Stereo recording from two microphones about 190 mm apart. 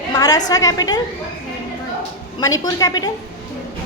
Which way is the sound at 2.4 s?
20° left (ahead or behind).